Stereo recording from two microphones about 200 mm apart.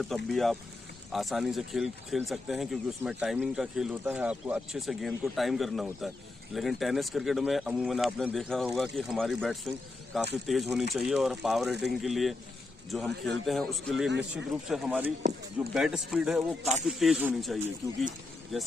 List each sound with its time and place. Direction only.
0.0 s speech: centre (ahead or behind)